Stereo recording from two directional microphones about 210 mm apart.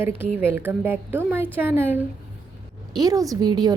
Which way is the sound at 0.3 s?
10° right (ahead or behind).